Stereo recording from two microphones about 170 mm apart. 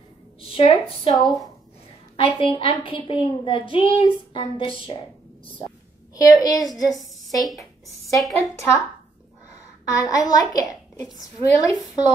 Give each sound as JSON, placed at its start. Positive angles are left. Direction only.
{"t": 0.6, "sound": "a woman's voice", "side_deg": 30}
{"t": 1.1, "sound": "a woman's voice", "side_deg": 0}
{"t": 2.1, "sound": "a woman's voice", "side_deg": 35}
{"t": 6.1, "sound": "a child's voice", "side_deg": 20}
{"t": 7.3, "sound": "a woman's voice", "side_deg": 0}
{"t": 9.9, "sound": "a child's voice", "side_deg": 20}